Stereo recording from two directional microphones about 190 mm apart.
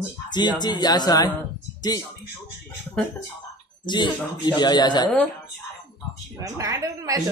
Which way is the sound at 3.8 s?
25° left (ahead or behind).